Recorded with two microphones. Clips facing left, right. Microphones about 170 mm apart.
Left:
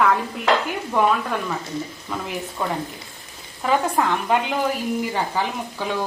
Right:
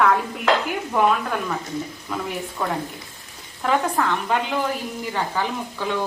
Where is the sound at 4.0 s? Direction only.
15° left (ahead or behind).